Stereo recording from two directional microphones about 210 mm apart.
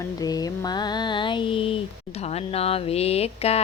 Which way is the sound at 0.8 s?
20° left (ahead or behind).